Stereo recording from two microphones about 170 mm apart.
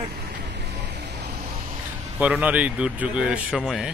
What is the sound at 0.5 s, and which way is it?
Music, 80° right.